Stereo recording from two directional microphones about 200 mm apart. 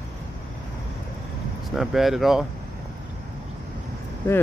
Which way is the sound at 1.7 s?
Centre (ahead or behind).